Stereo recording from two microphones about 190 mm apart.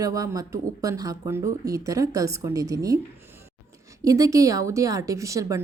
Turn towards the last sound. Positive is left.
turn(degrees=-15)  # may be behind; listen again after turning